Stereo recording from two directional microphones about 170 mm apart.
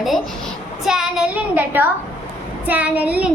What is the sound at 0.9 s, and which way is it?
Child singing, 5° right (ahead or behind).